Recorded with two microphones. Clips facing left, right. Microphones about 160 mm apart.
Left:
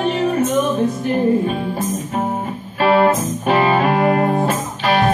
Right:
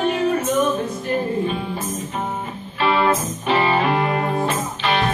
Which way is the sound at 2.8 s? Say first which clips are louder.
Left 5 dB; 45° left (ahead or behind).